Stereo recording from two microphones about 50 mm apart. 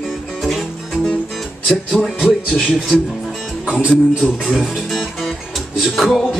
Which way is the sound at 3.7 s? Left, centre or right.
Left.